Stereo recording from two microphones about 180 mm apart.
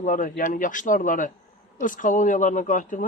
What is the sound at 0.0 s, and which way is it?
Speech, 45° left (ahead or behind).